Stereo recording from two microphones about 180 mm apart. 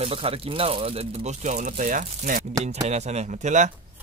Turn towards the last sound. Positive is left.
turn(degrees=-40)  # may be behind; listen again after turning